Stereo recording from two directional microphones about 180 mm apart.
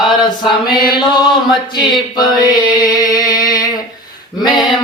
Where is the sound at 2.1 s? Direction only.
20° left (ahead or behind).